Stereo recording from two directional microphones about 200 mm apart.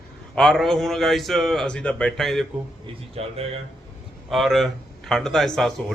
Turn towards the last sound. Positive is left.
turn(degrees=0)  # may be behind; listen again after turning